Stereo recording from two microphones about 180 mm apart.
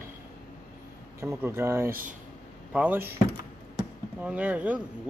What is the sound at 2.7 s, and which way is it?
Speech, 10° right (ahead or behind).